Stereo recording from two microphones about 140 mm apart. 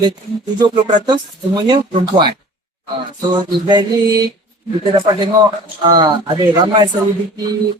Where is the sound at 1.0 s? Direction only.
30° right (ahead or behind).